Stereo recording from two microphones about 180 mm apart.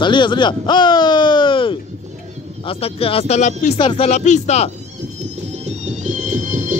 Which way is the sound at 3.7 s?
30° left (ahead or behind).